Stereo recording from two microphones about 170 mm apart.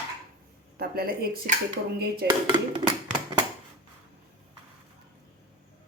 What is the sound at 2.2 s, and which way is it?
Dishes, 85° right.